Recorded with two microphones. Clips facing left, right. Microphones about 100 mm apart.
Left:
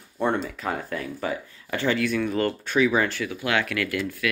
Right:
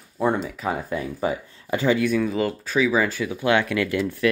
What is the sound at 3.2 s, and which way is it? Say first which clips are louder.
Speech: right 5 dB; 20° right (ahead or behind).